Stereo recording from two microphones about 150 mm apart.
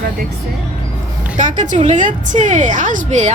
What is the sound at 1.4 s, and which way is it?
A woman's voice, 55° right (ahead or behind).